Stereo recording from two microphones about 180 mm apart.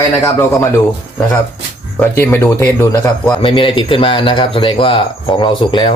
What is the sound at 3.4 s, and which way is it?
Speech, 30° left (ahead or behind).